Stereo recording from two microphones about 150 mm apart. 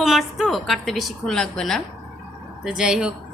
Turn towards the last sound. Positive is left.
turn(degrees=-5)  # may be behind; listen again after turning